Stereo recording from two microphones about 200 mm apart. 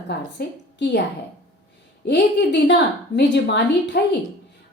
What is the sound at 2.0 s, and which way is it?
A woman's voice, 60° left (ahead or behind).